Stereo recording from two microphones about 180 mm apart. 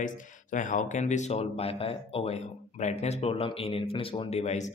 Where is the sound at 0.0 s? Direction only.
45° left (ahead or behind).